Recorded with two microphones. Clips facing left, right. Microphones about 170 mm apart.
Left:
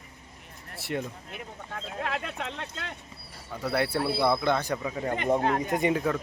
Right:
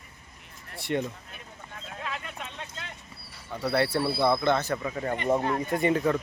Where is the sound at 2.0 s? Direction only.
70° left (ahead or behind).